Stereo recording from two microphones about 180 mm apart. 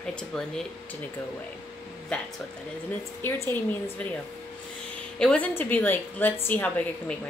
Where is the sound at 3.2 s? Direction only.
10° left (ahead or behind).